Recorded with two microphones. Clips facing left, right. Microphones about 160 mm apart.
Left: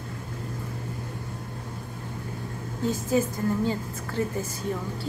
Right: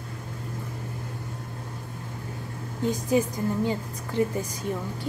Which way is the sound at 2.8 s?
20° right (ahead or behind).